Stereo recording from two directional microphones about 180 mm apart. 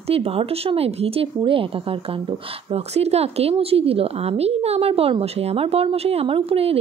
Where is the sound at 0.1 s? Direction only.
30° right (ahead or behind).